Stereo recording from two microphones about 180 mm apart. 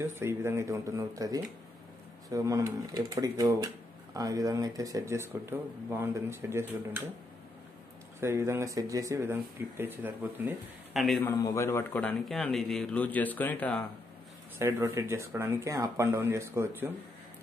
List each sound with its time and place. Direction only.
0.0 s speech: 15° right (ahead or behind)
8.2 s speech: 15° right (ahead or behind)
11.0 s a man's voice: centre (ahead or behind)
11.2 s a man's voice: 15° left (ahead or behind)
14.6 s speech: 15° right (ahead or behind)